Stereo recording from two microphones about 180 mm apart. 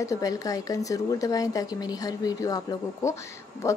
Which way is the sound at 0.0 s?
20° left (ahead or behind).